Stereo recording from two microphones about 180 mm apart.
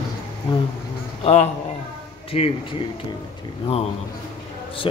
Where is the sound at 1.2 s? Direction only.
35° left (ahead or behind).